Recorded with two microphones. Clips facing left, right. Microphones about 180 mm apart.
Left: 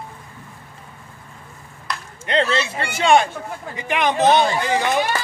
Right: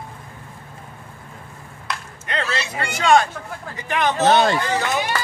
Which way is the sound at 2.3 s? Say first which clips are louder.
Left 6 dB; 30° left (ahead or behind).